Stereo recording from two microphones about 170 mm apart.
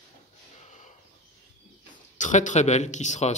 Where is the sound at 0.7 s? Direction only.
45° left (ahead or behind).